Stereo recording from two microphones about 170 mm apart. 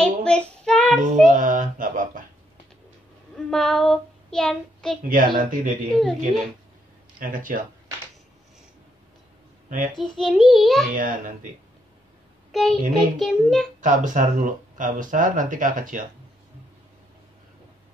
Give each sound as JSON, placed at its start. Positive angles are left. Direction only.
{"t": 0.0, "sound": "child singing", "side_deg": 5}
{"t": 1.2, "sound": "a sound", "side_deg": -50}
{"t": 3.3, "sound": "child singing", "side_deg": 0}
{"t": 5.0, "sound": "speech", "side_deg": -55}
{"t": 5.9, "sound": "a child's voice", "side_deg": 0}
{"t": 7.2, "sound": "speech", "side_deg": -50}
{"t": 9.9, "sound": "a child's voice", "side_deg": 0}
{"t": 11.0, "sound": "speech", "side_deg": -50}
{"t": 12.5, "sound": "a child's voice", "side_deg": 0}
{"t": 13.7, "sound": "speech", "side_deg": -50}